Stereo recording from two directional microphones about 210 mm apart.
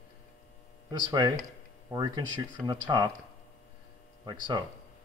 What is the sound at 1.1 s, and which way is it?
Speech, 15° right (ahead or behind).